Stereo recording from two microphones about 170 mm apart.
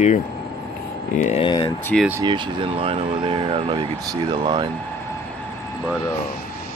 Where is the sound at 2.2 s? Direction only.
30° right (ahead or behind).